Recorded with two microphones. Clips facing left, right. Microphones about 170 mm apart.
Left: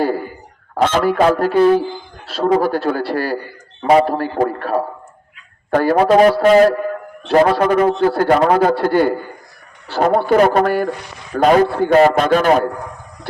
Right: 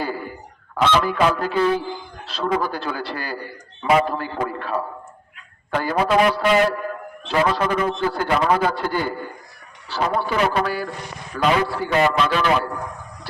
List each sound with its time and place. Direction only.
0.7 s a man's voice: 45° left (ahead or behind)
4.1 s a man's voice: 40° left (ahead or behind)
7.3 s a man's voice: 55° left (ahead or behind)
8.7 s a man's voice: 55° left (ahead or behind)